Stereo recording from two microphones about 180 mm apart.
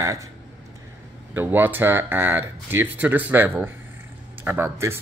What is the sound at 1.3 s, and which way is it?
Speech, 10° right (ahead or behind).